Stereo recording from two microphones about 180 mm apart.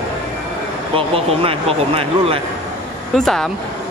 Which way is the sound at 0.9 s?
30° right (ahead or behind).